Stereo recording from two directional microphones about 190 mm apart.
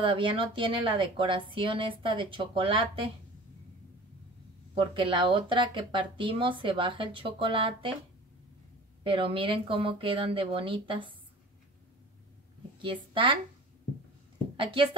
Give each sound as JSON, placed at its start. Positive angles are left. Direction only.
{"t": 0.0, "sound": "speech", "side_deg": -25}
{"t": 4.7, "sound": "speech", "side_deg": -25}
{"t": 9.0, "sound": "speech", "side_deg": -25}
{"t": 12.7, "sound": "a woman's voice", "side_deg": -25}
{"t": 14.6, "sound": "speech", "side_deg": -25}